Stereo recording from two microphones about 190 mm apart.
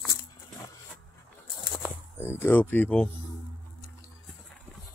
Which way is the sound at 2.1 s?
10° left (ahead or behind).